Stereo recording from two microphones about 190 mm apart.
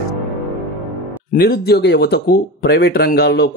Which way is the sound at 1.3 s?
55° left (ahead or behind).